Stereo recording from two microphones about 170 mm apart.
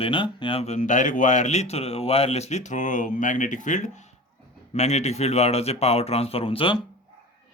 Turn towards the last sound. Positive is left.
turn(degrees=30)  # may be behind; listen again after turning